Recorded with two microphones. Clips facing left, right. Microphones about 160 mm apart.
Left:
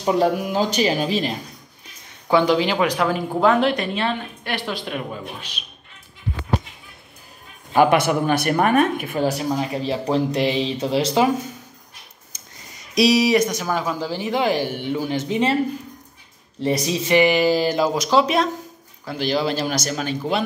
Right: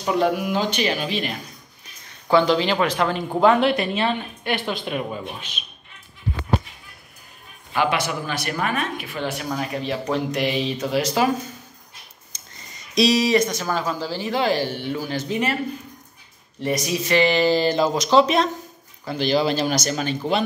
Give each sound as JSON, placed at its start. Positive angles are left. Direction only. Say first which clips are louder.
{"t": 0.0, "sound": "speech", "louder": "left 2 dB", "side_deg": 40}
{"t": 2.2, "sound": "a woman's voice", "louder": "even", "side_deg": 10}
{"t": 7.7, "sound": "speech", "louder": "left 6 dB", "side_deg": 50}
{"t": 12.9, "sound": "speech", "louder": "left 2 dB", "side_deg": 10}
{"t": 16.6, "sound": "a woman's voice", "louder": "left 2 dB", "side_deg": 30}